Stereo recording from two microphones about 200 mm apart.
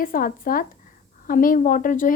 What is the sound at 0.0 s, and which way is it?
Speech, 45° left (ahead or behind).